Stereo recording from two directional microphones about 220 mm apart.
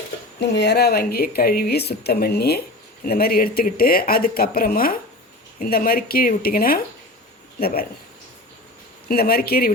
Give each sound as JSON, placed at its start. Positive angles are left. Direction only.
{"t": 0.3, "sound": "speech", "side_deg": 50}
{"t": 9.0, "sound": "speech", "side_deg": 45}